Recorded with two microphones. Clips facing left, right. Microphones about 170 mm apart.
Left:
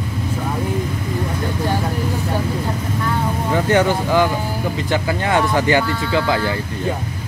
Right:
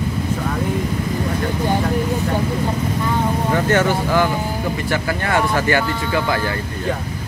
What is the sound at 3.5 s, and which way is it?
Speech, 15° left (ahead or behind).